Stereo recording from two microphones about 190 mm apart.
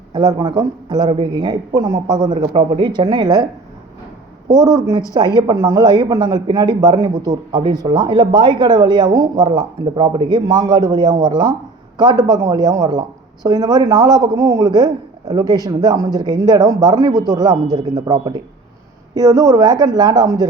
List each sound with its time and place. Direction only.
0.1 s speech: 20° right (ahead or behind)
4.5 s speech: 20° right (ahead or behind)